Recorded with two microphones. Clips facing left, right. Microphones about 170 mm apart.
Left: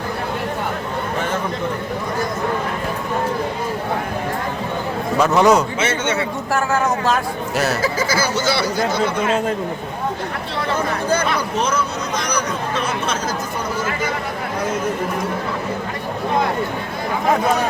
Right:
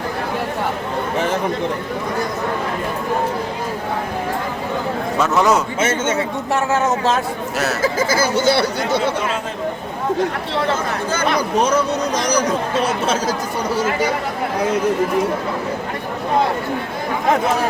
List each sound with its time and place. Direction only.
5.2 s a man's voice: centre (ahead or behind)
5.8 s speech: 45° right (ahead or behind)
6.7 s a man's voice: 20° right (ahead or behind)
7.8 s speech: 50° right (ahead or behind)